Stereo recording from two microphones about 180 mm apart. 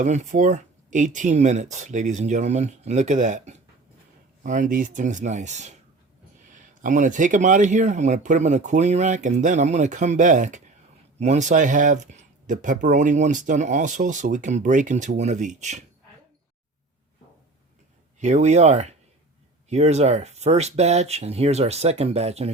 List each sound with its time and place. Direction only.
0.0 s speech: 40° right (ahead or behind)
18.2 s speech: 40° right (ahead or behind)